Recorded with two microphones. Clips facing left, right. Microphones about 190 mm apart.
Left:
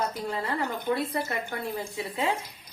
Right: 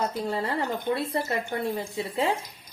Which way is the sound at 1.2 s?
30° right (ahead or behind).